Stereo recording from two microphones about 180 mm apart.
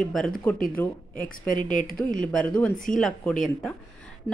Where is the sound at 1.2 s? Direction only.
45° left (ahead or behind).